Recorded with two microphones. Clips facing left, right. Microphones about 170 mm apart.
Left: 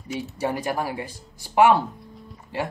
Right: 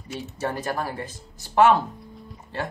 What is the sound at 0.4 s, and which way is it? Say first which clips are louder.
Speech: left 2 dB; 15° left (ahead or behind).